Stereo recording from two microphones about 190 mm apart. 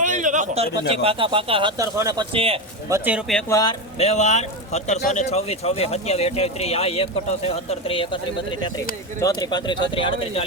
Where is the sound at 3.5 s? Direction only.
20° left (ahead or behind).